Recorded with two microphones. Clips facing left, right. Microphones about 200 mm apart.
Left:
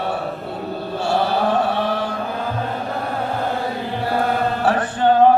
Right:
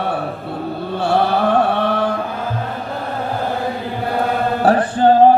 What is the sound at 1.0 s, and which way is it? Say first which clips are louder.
Music: right 3 dB; 60° right (ahead or behind).